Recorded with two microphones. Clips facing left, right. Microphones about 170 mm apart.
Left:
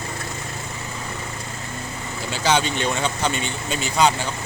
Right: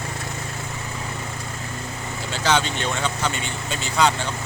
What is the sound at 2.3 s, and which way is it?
Speech, 15° left (ahead or behind).